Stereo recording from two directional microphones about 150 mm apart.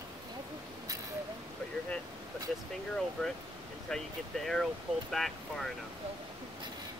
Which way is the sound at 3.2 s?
5° left (ahead or behind).